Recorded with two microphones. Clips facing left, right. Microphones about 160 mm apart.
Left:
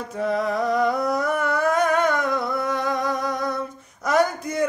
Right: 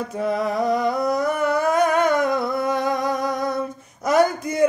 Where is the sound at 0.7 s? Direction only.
5° right (ahead or behind).